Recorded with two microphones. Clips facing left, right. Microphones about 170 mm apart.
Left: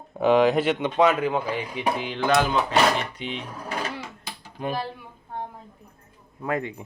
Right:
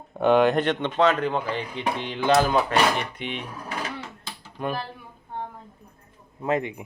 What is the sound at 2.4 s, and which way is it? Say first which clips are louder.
Speech: right 2 dB; 45° right (ahead or behind).